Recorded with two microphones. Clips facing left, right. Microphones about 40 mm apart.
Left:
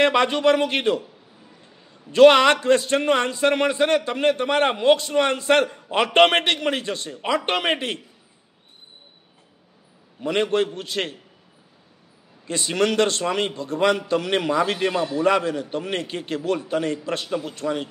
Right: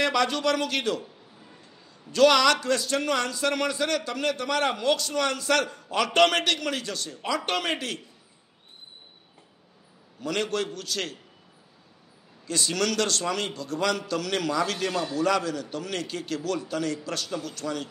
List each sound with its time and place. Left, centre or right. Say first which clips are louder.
0.0 s a man's voice: left 6 dB; left
10.2 s a man's voice: left 7 dB; left
12.4 s a man's voice: left 5 dB; left